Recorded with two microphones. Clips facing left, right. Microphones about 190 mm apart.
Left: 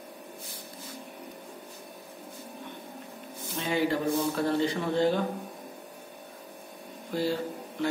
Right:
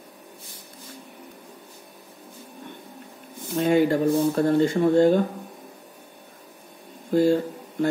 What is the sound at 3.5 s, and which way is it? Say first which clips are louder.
Speech: right 8 dB; 50° right (ahead or behind).